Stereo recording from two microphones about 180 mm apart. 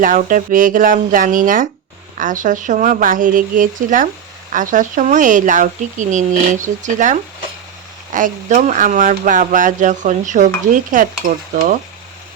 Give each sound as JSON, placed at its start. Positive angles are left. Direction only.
{"t": 0.0, "sound": "speech", "side_deg": -45}